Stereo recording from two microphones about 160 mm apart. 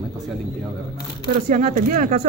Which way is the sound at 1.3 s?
55° right (ahead or behind).